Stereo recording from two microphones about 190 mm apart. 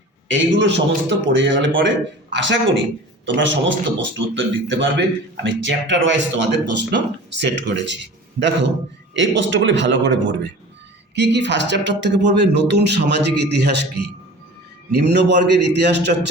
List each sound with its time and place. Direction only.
0.3 s a man's voice: 70° right (ahead or behind)
9.1 s a man's voice: 70° right (ahead or behind)